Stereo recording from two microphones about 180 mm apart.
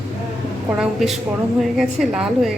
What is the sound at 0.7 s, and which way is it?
A woman's voice, centre (ahead or behind).